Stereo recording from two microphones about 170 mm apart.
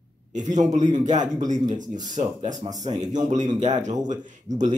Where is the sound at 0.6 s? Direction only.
45° right (ahead or behind).